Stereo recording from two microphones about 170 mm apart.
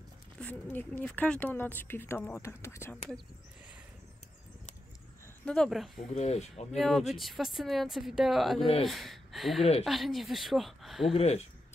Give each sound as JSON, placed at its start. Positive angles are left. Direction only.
{"t": 0.4, "sound": "speech", "side_deg": 10}
{"t": 5.4, "sound": "speech", "side_deg": 5}
{"t": 6.0, "sound": "speech", "side_deg": 40}
{"t": 6.8, "sound": "speech", "side_deg": 0}
{"t": 11.1, "sound": "speech", "side_deg": 40}